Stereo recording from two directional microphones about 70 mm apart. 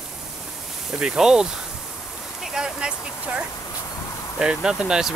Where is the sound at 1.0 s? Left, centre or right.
Centre.